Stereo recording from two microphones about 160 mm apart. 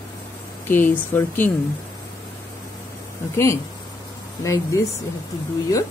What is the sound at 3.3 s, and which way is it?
Speech, 15° left (ahead or behind).